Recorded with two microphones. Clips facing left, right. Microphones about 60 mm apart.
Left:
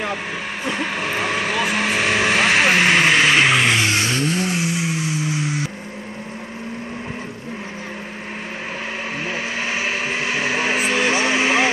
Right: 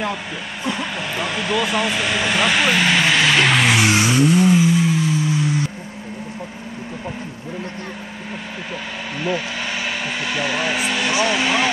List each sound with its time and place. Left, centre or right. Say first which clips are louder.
0.7 s vehicle: left 1 dB; left
3.7 s a sound: right 3 dB; centre
10.2 s vehicle: even; left